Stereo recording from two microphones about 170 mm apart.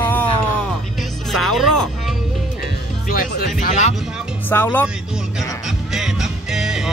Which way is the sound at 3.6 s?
45° left (ahead or behind).